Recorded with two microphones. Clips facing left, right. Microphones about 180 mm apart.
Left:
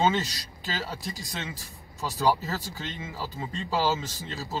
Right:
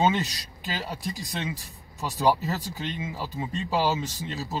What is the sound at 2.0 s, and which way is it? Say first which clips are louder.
Speech: right 2 dB; 15° right (ahead or behind).